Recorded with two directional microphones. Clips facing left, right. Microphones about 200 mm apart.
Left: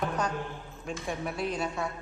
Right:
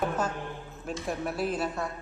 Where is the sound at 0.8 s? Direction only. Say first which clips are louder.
Right 2 dB; centre (ahead or behind).